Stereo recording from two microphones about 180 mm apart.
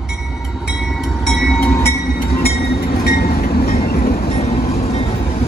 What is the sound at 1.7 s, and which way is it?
Train, 15° left (ahead or behind).